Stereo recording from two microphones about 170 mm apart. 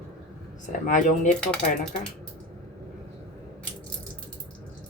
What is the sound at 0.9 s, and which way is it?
Speech, 45° left (ahead or behind).